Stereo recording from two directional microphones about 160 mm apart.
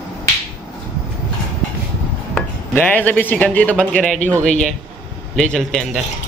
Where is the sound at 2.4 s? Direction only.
10° left (ahead or behind).